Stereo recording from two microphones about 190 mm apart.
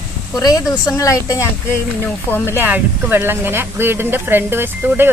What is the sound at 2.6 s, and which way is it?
Speech, 10° right (ahead or behind).